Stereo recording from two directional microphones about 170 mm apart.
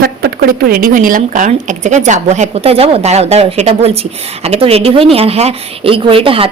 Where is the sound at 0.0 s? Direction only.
60° right (ahead or behind).